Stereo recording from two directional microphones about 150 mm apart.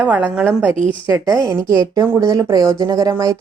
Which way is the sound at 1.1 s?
20° right (ahead or behind).